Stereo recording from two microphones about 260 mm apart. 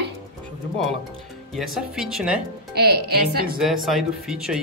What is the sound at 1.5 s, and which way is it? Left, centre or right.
Speech, centre.